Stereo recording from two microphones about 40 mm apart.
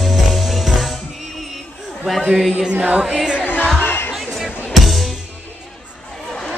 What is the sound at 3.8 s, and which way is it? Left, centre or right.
Music, left.